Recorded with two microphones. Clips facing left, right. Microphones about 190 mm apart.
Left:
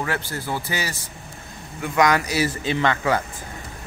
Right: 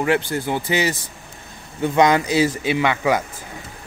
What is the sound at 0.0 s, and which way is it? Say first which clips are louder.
Speech: right 7 dB; 20° right (ahead or behind).